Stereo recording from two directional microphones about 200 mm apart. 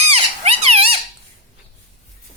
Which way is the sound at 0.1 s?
30° right (ahead or behind).